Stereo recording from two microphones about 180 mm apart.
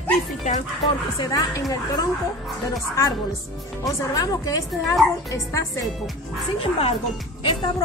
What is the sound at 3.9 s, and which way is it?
A woman's voice, 20° left (ahead or behind).